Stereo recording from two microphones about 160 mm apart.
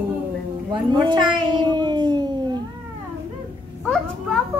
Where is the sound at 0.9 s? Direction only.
25° right (ahead or behind).